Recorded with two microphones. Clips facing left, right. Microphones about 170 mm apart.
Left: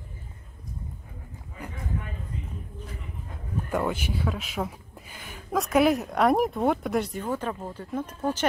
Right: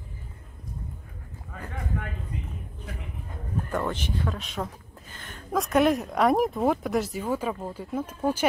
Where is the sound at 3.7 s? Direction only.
10° left (ahead or behind); by 8.4 s 10° right (ahead or behind).